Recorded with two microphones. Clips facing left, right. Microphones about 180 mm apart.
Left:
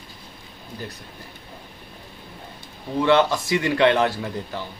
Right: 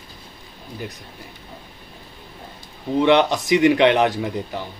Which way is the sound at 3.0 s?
20° right (ahead or behind).